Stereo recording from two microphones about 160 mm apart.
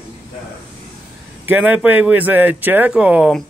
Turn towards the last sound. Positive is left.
turn(degrees=-5)  # may be behind; listen again after turning